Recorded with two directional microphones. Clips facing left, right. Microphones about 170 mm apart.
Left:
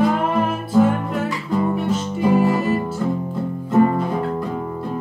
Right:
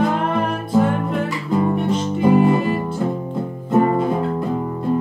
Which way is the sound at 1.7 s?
5° left (ahead or behind).